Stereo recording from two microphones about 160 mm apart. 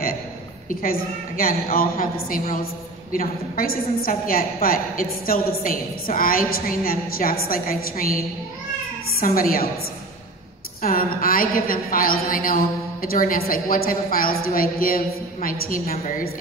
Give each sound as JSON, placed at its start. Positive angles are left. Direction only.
{"t": 0.7, "sound": "a woman's voice", "side_deg": 65}
{"t": 9.2, "sound": "a woman's voice", "side_deg": 65}
{"t": 10.8, "sound": "a woman's voice", "side_deg": 65}